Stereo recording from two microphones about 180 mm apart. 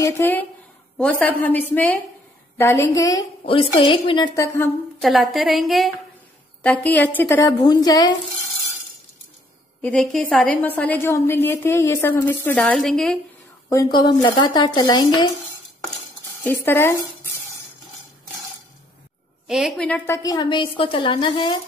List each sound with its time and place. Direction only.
0.0 s a woman's voice: 10° left (ahead or behind)
5.0 s a woman's voice: centre (ahead or behind); by 8.1 s 20° left (ahead or behind)
9.8 s a woman's voice: 5° left (ahead or behind)
13.7 s a woman's voice: 20° left (ahead or behind)
16.4 s a woman's voice: 10° left (ahead or behind)
19.4 s a woman's voice: 5° right (ahead or behind)
20.2 s a woman's voice: 20° left (ahead or behind)